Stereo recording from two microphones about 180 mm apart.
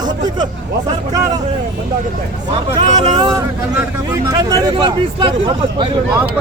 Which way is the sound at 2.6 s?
35° right (ahead or behind).